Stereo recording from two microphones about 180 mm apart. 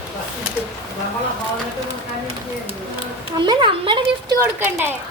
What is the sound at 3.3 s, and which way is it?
A child's voice, 25° right (ahead or behind).